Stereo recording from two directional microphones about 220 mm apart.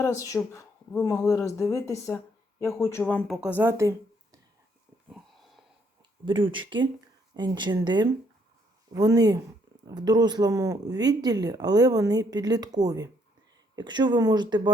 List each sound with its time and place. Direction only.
0.2 s speech: 15° left (ahead or behind); by 4.4 s 15° right (ahead or behind)
5.0 s wheeze: centre (ahead or behind)
6.2 s speech: 20° right (ahead or behind)